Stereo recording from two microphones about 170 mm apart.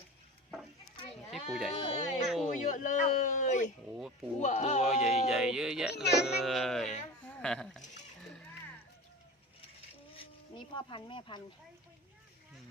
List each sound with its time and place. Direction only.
1.3 s sheep: centre (ahead or behind)
1.7 s a sound: 40° left (ahead or behind)
3.8 s speech: 5° right (ahead or behind)
4.4 s speech: 45° left (ahead or behind)
5.3 s speech: 5° right (ahead or behind)
6.0 s speech: 80° left
6.2 s speech: centre (ahead or behind)
7.3 s a sound: 5° left (ahead or behind)
10.8 s speech: 30° left (ahead or behind)